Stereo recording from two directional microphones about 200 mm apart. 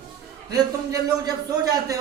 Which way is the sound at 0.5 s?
20° right (ahead or behind).